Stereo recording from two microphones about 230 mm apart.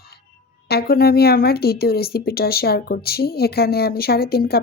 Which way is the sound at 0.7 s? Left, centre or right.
Left.